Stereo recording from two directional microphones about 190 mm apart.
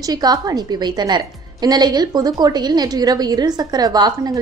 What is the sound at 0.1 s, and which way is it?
A woman's voice, 20° right (ahead or behind).